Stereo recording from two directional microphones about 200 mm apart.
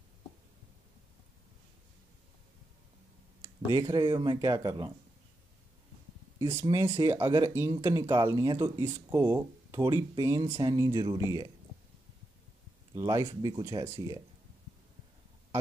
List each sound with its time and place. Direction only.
3.7 s speech: 20° right (ahead or behind)
6.4 s speech: 15° right (ahead or behind)
12.9 s speech: 15° right (ahead or behind)